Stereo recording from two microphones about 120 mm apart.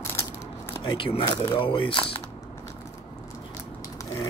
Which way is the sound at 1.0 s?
45° left (ahead or behind).